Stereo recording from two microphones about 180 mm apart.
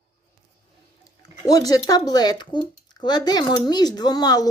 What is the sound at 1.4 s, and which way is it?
Speech, 20° left (ahead or behind).